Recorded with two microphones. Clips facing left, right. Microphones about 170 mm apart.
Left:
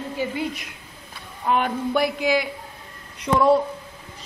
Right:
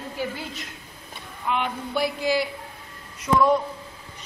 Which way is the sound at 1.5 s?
50° left (ahead or behind).